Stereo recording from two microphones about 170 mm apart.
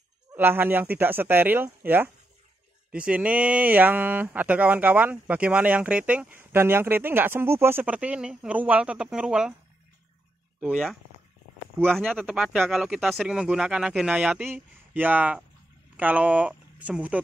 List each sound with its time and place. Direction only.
0.3 s speech: 10° right (ahead or behind)
10.6 s speech: 5° right (ahead or behind)